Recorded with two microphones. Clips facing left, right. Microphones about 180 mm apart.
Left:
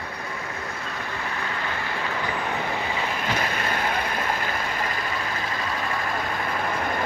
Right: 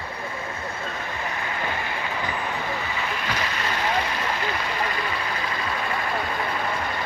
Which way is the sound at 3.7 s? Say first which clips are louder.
Right 1 dB; 55° left (ahead or behind).